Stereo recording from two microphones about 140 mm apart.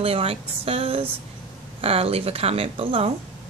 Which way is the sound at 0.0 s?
45° right (ahead or behind).